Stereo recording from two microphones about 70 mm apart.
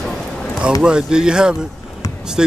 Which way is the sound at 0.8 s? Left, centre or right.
Centre.